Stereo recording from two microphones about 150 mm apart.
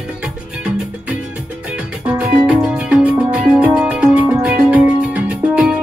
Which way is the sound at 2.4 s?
5° right (ahead or behind).